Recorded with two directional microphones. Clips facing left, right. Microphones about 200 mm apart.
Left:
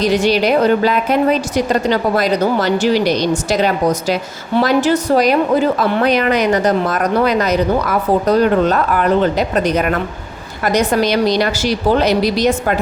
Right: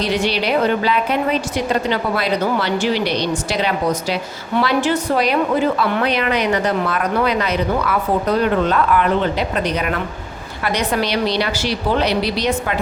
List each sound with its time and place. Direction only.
0.0 s a woman's voice: 45° left (ahead or behind)